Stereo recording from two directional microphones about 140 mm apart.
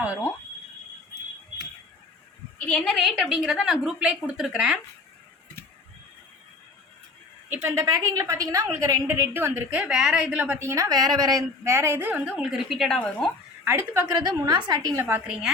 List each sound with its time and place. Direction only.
2.6 s a woman's voice: 5° left (ahead or behind)
7.5 s a woman's voice: 20° right (ahead or behind); by 13.3 s 10° left (ahead or behind)
13.7 s a woman's voice: 15° right (ahead or behind)
14.2 s a woman's voice: 30° right (ahead or behind)
15.0 s a woman's voice: 10° right (ahead or behind)